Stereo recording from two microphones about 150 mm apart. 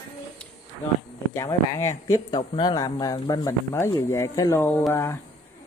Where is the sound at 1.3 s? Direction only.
20° left (ahead or behind).